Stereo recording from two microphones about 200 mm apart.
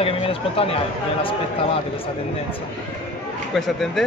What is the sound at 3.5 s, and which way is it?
Speech, centre (ahead or behind).